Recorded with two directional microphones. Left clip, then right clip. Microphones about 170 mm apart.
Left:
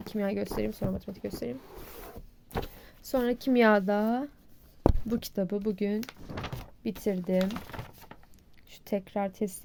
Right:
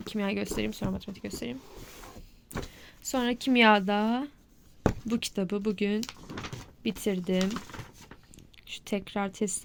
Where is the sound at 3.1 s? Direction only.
25° left (ahead or behind).